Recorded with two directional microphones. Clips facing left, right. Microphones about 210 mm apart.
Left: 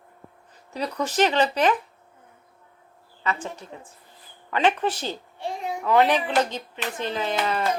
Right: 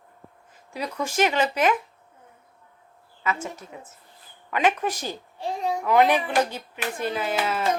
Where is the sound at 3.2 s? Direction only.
5° right (ahead or behind).